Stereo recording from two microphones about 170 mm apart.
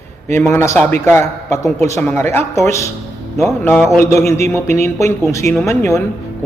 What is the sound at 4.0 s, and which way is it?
A man's voice, 15° left (ahead or behind).